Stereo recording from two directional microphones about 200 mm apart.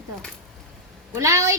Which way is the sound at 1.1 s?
15° right (ahead or behind).